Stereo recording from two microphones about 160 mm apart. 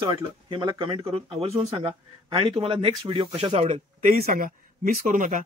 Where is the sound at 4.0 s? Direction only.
60° right (ahead or behind).